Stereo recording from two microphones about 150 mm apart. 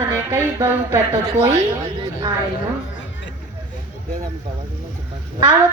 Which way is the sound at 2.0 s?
35° right (ahead or behind).